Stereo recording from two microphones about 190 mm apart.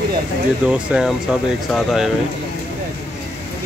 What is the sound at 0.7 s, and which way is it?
Speech, 5° right (ahead or behind).